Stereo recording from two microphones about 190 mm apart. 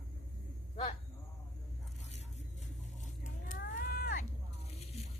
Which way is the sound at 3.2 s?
45° left (ahead or behind).